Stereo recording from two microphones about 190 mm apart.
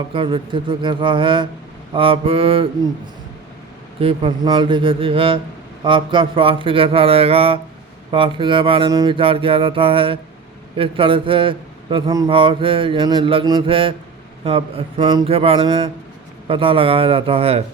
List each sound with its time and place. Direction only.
0.1 s a man's voice: 25° right (ahead or behind)
4.0 s a man's voice: 25° right (ahead or behind)